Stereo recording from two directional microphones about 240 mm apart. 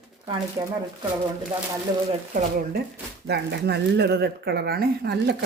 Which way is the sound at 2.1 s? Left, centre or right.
Right.